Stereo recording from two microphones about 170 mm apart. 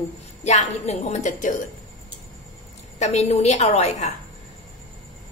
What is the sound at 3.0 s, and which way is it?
A woman's voice, 40° left (ahead or behind).